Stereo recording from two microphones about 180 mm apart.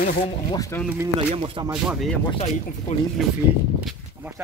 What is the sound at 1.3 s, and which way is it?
Speech, 30° right (ahead or behind).